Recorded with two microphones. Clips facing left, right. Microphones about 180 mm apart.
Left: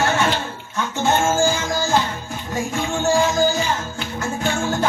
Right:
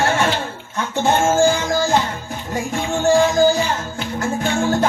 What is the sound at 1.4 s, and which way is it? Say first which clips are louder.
Music: right 4 dB; 35° right (ahead or behind).